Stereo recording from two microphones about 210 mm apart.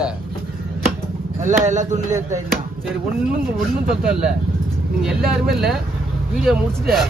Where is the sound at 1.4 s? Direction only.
35° right (ahead or behind).